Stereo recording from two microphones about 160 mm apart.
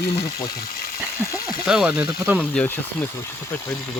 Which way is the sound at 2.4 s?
10° left (ahead or behind).